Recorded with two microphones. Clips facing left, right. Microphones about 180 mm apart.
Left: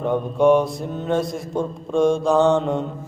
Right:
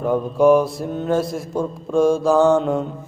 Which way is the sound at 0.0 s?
Centre (ahead or behind).